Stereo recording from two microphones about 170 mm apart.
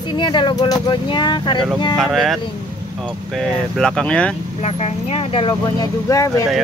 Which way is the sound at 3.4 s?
5° left (ahead or behind).